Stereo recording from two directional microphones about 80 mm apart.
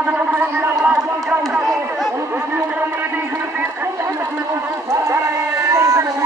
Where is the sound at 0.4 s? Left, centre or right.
Centre.